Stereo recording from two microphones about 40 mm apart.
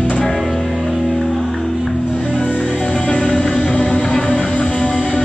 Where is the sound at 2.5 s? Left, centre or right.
Centre.